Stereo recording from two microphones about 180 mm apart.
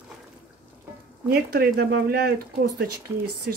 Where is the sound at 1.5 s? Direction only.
65° right (ahead or behind).